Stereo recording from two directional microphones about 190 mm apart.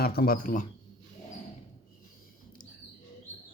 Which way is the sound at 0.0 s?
55° left (ahead or behind).